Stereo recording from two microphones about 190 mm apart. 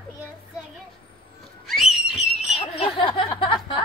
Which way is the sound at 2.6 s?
30° left (ahead or behind).